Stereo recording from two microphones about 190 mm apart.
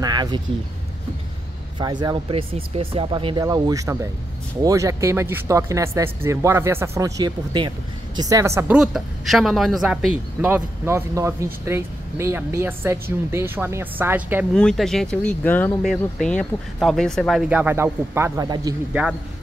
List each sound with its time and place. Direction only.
0.0 s a sound: 20° right (ahead or behind)
1.8 s a woman's voice: 20° right (ahead or behind)
14.5 s speech: 5° left (ahead or behind); by 18.8 s 20° right (ahead or behind)